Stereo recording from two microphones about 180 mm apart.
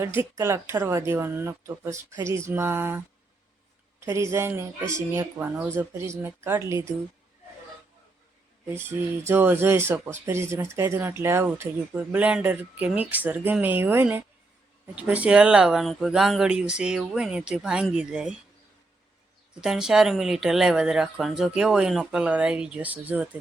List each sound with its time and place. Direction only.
0.3 s speech: 15° right (ahead or behind)
4.0 s speech: 15° right (ahead or behind)
9.2 s speech: 10° right (ahead or behind)
19.6 s speech: 5° right (ahead or behind)